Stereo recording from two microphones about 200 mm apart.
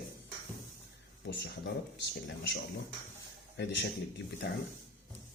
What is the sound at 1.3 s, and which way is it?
Speech, 55° left (ahead or behind).